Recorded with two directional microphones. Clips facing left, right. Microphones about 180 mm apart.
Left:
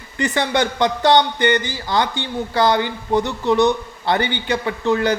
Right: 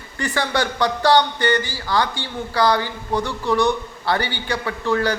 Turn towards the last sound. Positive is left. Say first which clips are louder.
# left 3 dB
turn(degrees=20)  # may be behind; listen again after turning